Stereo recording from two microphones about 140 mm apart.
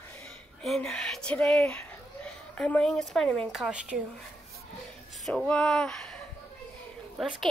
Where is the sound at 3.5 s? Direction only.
5° right (ahead or behind).